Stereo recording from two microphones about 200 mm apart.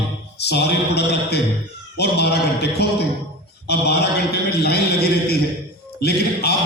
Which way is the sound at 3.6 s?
55° left (ahead or behind).